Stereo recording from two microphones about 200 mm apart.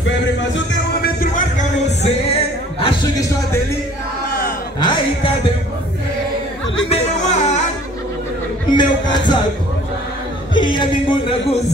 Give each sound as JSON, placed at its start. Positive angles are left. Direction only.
{"t": 1.0, "sound": "music", "side_deg": 40}
{"t": 2.8, "sound": "music", "side_deg": 20}
{"t": 4.7, "sound": "a man's voice", "side_deg": 20}
{"t": 6.9, "sound": "music", "side_deg": 35}
{"t": 8.7, "sound": "a man's voice", "side_deg": 20}
{"t": 10.6, "sound": "speech", "side_deg": 25}